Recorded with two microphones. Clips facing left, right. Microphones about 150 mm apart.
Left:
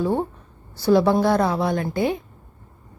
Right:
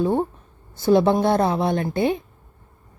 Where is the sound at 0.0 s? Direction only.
15° right (ahead or behind).